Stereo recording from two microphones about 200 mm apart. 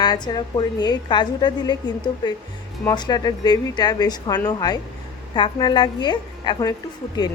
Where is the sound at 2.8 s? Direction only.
20° left (ahead or behind).